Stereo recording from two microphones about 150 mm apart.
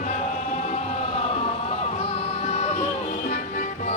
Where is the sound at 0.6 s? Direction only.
45° left (ahead or behind).